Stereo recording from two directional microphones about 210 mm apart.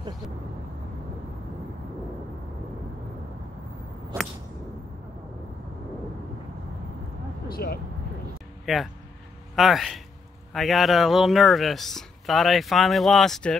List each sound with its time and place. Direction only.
7.4 s vehicle: 45° left (ahead or behind)
8.7 s speech: centre (ahead or behind)